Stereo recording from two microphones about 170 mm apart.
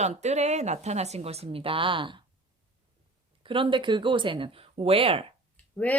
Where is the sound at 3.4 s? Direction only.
30° right (ahead or behind).